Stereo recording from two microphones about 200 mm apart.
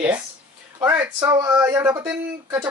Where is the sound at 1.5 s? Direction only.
5° right (ahead or behind).